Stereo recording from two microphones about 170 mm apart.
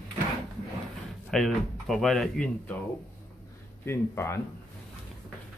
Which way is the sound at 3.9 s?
15° left (ahead or behind).